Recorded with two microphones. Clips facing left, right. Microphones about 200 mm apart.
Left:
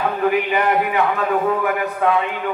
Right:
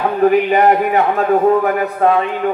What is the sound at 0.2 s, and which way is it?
A man's voice, 40° right (ahead or behind).